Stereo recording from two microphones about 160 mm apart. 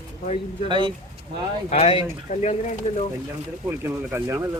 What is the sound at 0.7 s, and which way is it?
Speech, 30° right (ahead or behind).